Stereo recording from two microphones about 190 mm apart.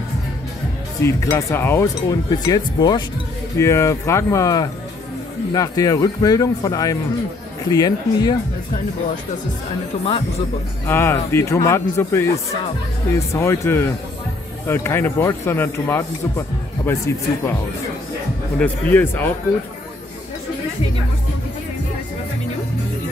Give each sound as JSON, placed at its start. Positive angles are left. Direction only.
{"t": 1.0, "sound": "a man's voice", "side_deg": 15}
{"t": 10.9, "sound": "speech", "side_deg": 10}
{"t": 13.3, "sound": "speech", "side_deg": 15}
{"t": 18.6, "sound": "speech", "side_deg": 10}